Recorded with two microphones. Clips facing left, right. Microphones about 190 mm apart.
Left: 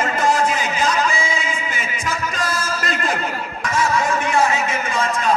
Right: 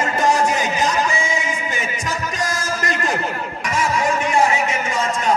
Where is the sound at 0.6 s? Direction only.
20° right (ahead or behind).